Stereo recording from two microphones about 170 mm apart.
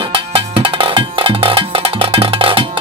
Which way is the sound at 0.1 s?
30° right (ahead or behind).